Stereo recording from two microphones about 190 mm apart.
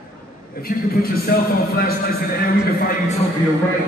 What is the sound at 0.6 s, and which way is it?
A man's voice, 50° left (ahead or behind).